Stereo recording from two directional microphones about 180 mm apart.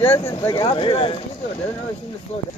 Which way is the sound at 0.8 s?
30° left (ahead or behind).